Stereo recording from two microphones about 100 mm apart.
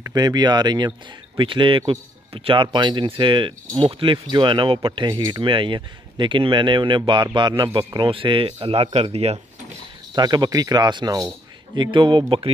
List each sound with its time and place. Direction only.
0.0 s a man's voice: 40° right (ahead or behind); by 9.4 s 90° right
10.1 s speech: 45° right (ahead or behind)
11.7 s a man's voice: 50° right (ahead or behind)